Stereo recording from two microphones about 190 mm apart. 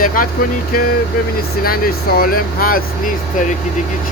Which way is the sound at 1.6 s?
50° left (ahead or behind).